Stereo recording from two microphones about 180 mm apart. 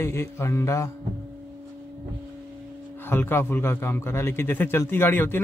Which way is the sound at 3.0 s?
10° left (ahead or behind).